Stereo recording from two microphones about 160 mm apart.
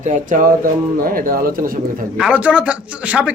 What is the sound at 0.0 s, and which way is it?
Speech, 50° right (ahead or behind).